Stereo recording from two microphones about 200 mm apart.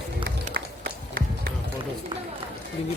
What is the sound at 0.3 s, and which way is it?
Run, 45° right (ahead or behind).